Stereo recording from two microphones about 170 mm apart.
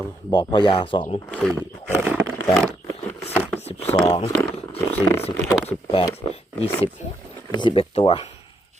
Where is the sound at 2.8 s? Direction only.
15° left (ahead or behind).